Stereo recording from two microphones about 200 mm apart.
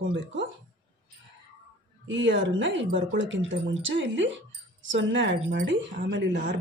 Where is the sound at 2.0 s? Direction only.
65° right (ahead or behind).